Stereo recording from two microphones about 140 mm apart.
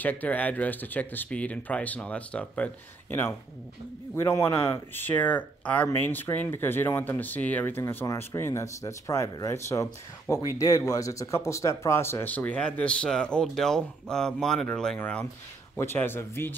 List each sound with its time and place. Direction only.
0.0 s speech: 10° left (ahead or behind)